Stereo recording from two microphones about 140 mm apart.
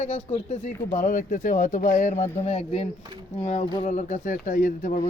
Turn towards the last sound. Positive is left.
turn(degrees=65)  # may be behind; listen again after turning